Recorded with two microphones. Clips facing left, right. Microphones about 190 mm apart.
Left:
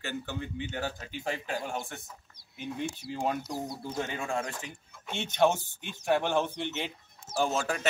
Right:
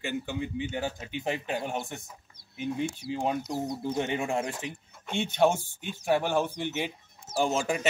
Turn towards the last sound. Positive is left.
turn(degrees=-15)  # may be behind; listen again after turning